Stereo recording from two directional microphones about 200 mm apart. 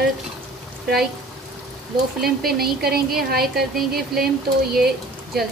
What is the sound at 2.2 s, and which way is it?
Speech, 50° right (ahead or behind).